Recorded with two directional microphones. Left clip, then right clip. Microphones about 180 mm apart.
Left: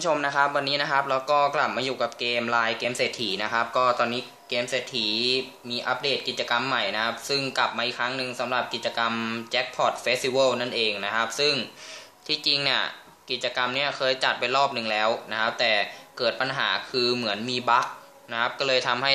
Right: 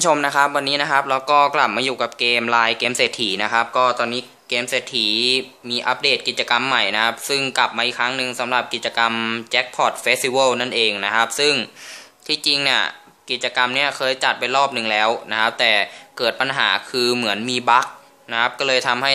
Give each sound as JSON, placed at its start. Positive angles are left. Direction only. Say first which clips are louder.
{"t": 0.0, "sound": "speech", "louder": "right 7 dB", "side_deg": -40}